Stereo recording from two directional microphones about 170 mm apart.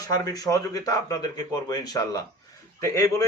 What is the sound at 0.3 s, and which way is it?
A man's voice, 20° left (ahead or behind).